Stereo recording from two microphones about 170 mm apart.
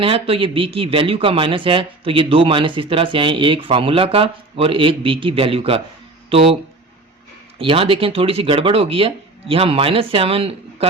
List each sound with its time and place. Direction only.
0.0 s speech: 35° right (ahead or behind)
7.6 s speech: 30° right (ahead or behind)